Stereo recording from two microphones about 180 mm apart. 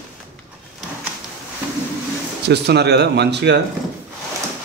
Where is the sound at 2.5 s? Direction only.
65° right (ahead or behind).